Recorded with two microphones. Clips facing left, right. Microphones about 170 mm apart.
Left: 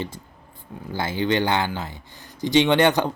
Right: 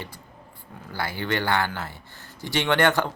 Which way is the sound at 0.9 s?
20° left (ahead or behind).